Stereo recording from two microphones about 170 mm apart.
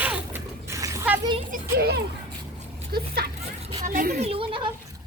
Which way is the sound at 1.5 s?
65° right (ahead or behind).